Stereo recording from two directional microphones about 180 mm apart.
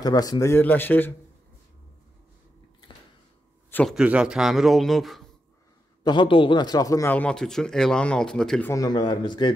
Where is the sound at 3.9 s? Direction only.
5° right (ahead or behind).